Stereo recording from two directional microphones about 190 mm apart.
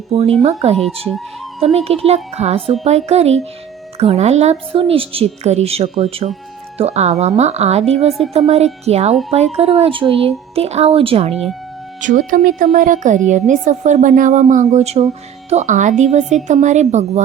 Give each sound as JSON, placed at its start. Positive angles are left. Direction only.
{"t": 0.1, "sound": "a woman's voice", "side_deg": -30}
{"t": 0.8, "sound": "speech", "side_deg": 0}
{"t": 1.6, "sound": "a woman's voice", "side_deg": -30}
{"t": 11.9, "sound": "a woman's voice", "side_deg": -45}